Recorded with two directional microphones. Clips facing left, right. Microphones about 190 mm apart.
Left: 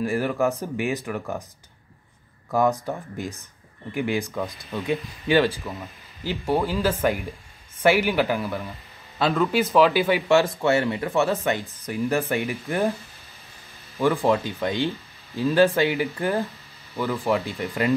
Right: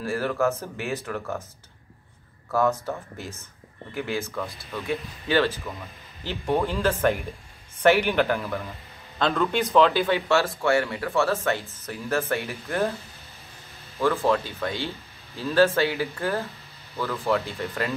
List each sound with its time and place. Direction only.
0.0 s speech: 15° left (ahead or behind)
2.5 s speech: 15° left (ahead or behind)
13.9 s speech: 15° left (ahead or behind)